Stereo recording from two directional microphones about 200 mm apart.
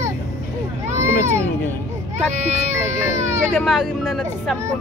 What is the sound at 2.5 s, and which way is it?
Speech, 35° right (ahead or behind).